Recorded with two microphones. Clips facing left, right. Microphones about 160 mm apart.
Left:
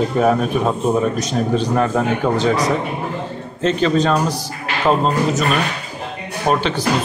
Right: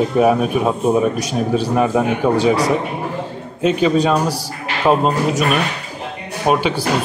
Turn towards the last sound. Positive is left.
turn(degrees=-10)  # may be behind; listen again after turning